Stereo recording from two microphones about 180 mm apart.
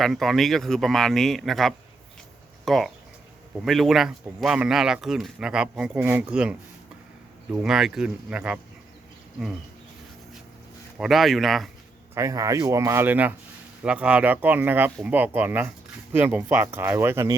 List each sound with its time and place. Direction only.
0.0 s speech: centre (ahead or behind)
7.6 s speech: 5° right (ahead or behind)
10.9 s speech: centre (ahead or behind)
12.1 s speech: 15° right (ahead or behind)